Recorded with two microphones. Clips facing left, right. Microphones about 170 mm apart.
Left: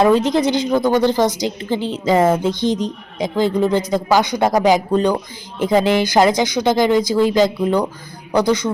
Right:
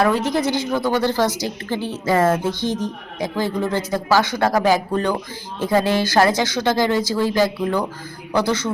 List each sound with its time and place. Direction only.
0.0 s a woman's voice: 20° left (ahead or behind)